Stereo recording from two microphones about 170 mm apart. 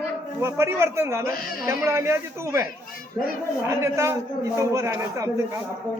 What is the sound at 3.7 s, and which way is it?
A man's voice, 15° right (ahead or behind).